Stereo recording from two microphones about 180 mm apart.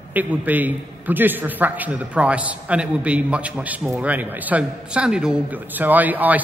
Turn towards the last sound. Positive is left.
turn(degrees=-10)  # may be behind; listen again after turning